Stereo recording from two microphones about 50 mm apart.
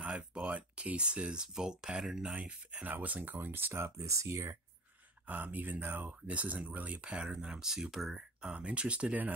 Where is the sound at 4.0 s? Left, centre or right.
Right.